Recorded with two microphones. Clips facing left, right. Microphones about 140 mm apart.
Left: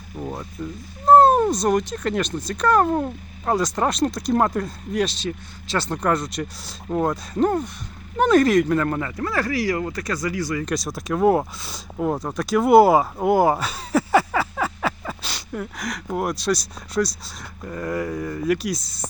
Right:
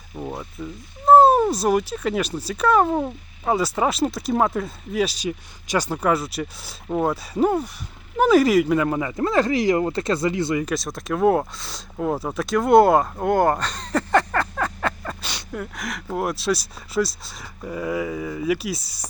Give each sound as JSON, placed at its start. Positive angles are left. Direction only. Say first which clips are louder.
{"t": 0.2, "sound": "speech", "louder": "left 1 dB", "side_deg": 0}
{"t": 9.1, "sound": "speech", "louder": "right 4 dB", "side_deg": -20}
{"t": 10.6, "sound": "speech", "louder": "even", "side_deg": 0}